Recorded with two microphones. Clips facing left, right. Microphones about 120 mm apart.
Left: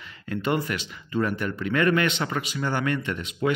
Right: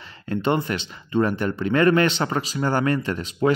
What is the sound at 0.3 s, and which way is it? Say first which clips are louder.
Speech: right 4 dB; 30° right (ahead or behind).